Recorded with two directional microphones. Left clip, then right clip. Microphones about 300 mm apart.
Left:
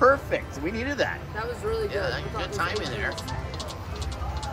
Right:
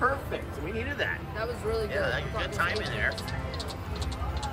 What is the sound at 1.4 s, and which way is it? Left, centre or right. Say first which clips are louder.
Speech: left 3 dB; left.